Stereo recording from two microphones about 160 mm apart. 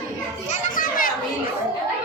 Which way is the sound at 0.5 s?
55° left (ahead or behind).